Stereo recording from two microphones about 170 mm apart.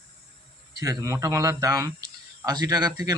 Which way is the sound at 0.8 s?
20° right (ahead or behind).